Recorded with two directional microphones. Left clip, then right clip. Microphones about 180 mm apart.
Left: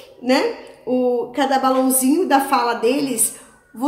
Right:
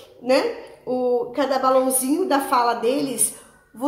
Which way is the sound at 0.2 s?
15° left (ahead or behind).